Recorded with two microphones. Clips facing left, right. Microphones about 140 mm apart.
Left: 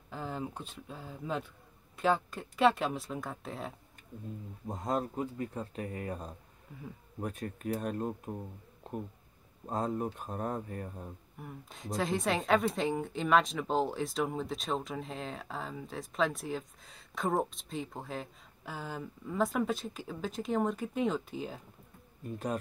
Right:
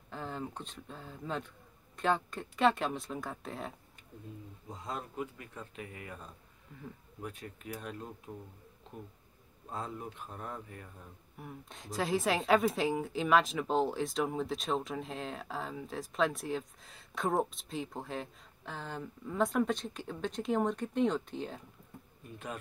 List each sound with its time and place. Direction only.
0.1 s a woman's voice: 5° left (ahead or behind)
4.6 s speech: 50° left (ahead or behind)
9.7 s speech: 40° left (ahead or behind)
11.3 s a woman's voice: centre (ahead or behind)